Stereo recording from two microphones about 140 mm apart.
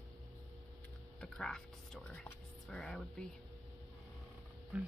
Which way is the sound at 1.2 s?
5° left (ahead or behind).